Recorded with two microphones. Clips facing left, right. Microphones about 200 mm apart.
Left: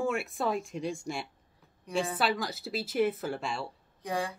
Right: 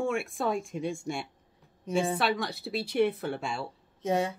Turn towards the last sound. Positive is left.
turn(degrees=-25)  # may be behind; listen again after turning